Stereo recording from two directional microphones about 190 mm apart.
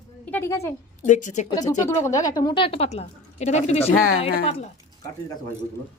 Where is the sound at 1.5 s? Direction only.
20° left (ahead or behind).